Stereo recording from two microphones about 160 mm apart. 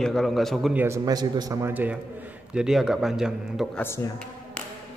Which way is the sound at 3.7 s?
15° left (ahead or behind).